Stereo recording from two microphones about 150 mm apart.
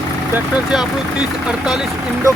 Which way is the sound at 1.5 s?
5° right (ahead or behind).